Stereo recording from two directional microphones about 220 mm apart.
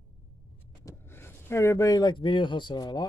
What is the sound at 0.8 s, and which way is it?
Speech, 10° left (ahead or behind).